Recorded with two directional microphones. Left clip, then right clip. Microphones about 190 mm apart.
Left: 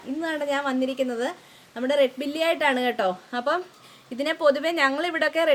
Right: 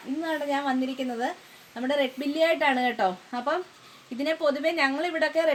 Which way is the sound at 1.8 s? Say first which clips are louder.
Left 5 dB; 15° left (ahead or behind).